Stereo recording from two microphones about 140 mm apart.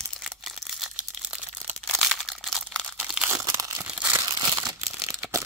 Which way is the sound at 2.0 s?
Centre (ahead or behind).